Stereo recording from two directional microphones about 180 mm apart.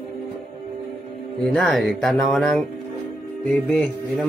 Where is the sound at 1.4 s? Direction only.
5° left (ahead or behind).